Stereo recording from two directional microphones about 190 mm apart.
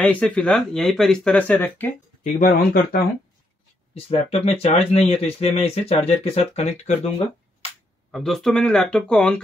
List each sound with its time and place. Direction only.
0.0 s speech: 5° left (ahead or behind)
2.3 s speech: 50° left (ahead or behind)
3.9 s speech: 30° left (ahead or behind)
8.1 s speech: centre (ahead or behind)